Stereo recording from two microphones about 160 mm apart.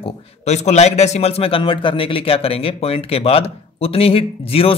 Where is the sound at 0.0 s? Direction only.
45° left (ahead or behind).